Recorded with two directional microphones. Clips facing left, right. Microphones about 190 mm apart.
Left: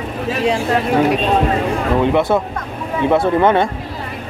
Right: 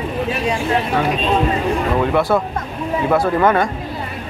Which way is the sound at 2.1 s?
20° left (ahead or behind).